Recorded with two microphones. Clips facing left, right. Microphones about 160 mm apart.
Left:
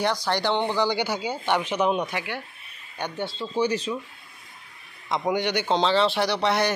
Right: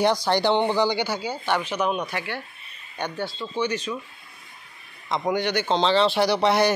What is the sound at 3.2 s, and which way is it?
Speech, 30° left (ahead or behind).